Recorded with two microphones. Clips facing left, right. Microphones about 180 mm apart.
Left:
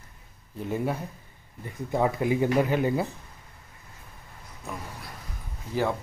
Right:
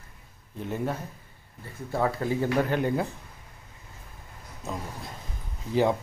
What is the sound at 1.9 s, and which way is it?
Speech, 15° left (ahead or behind).